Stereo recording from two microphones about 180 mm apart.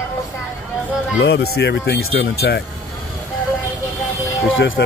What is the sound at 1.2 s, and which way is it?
Speech, 65° left (ahead or behind).